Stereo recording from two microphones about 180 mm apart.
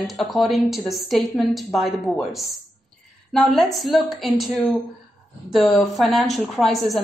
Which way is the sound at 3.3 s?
Centre (ahead or behind).